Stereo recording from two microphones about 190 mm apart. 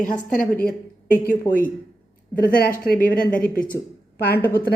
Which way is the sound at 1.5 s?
50° left (ahead or behind).